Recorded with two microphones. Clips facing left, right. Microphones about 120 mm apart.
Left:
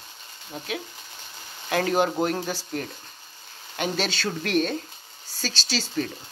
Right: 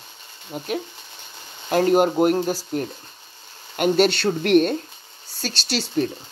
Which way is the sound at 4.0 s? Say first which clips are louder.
Right 10 dB; 60° right (ahead or behind).